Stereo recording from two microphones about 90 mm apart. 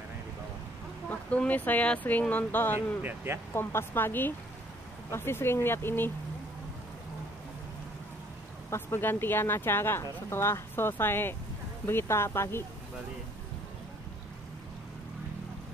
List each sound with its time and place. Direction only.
1.3 s speech: 15° left (ahead or behind)
3.0 s speech: 20° right (ahead or behind)
3.5 s speech: 25° left (ahead or behind)
8.6 s speech: 30° left (ahead or behind)